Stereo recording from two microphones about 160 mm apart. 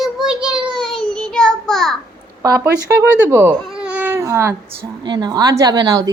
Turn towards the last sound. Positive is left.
turn(degrees=-25)  # may be behind; listen again after turning